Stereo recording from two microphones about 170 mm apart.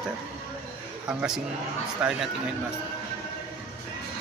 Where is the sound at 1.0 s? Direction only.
5° right (ahead or behind).